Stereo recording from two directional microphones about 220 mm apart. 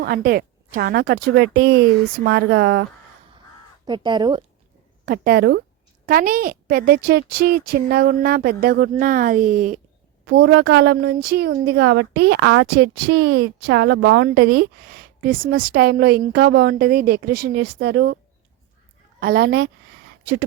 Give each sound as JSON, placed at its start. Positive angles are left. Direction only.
{"t": 0.0, "sound": "a woman's voice", "side_deg": -40}
{"t": 3.8, "sound": "speech", "side_deg": -20}
{"t": 5.0, "sound": "a woman's voice", "side_deg": -40}
{"t": 10.2, "sound": "a woman's voice", "side_deg": -50}
{"t": 19.2, "sound": "a woman's voice", "side_deg": -45}